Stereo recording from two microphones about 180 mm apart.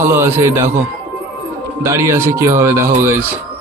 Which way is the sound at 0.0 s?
15° right (ahead or behind).